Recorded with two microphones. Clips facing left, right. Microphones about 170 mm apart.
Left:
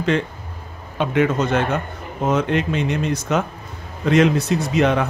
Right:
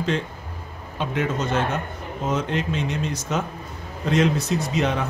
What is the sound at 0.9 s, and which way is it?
Speech, 65° left (ahead or behind).